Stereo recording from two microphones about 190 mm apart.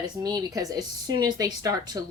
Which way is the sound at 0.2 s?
20° right (ahead or behind).